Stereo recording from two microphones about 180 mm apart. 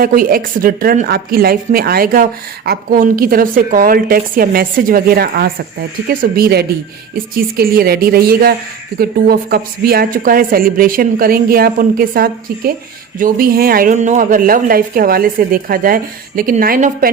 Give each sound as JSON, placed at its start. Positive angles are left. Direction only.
{"t": 0.0, "sound": "a man's voice", "side_deg": -55}